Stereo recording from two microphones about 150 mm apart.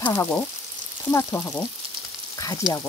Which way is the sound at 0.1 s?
20° left (ahead or behind).